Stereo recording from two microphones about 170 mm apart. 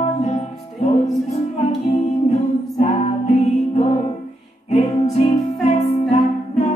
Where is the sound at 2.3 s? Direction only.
40° left (ahead or behind).